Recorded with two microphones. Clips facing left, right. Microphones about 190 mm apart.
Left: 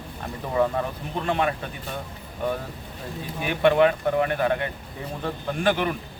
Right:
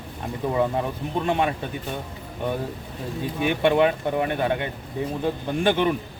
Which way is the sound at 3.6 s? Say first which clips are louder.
Left 2 dB; 20° right (ahead or behind).